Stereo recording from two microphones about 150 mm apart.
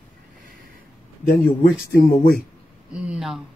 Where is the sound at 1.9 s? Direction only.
90° left.